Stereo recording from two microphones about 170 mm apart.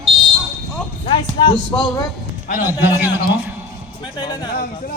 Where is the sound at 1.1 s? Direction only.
30° left (ahead or behind).